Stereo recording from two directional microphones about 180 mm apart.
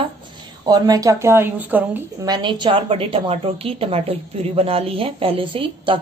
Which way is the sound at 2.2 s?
25° right (ahead or behind).